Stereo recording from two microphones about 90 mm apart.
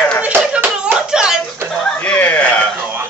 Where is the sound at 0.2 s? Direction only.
15° right (ahead or behind).